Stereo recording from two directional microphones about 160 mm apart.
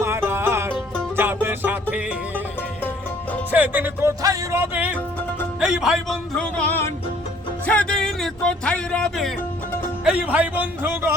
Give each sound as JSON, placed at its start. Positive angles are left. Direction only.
{"t": 0.0, "sound": "music", "side_deg": -15}
{"t": 3.5, "sound": "speech", "side_deg": -10}
{"t": 5.5, "sound": "music", "side_deg": -5}
{"t": 7.7, "sound": "music", "side_deg": 5}
{"t": 10.0, "sound": "speech", "side_deg": -5}